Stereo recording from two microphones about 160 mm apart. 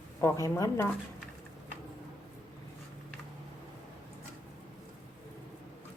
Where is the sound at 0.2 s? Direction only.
20° left (ahead or behind).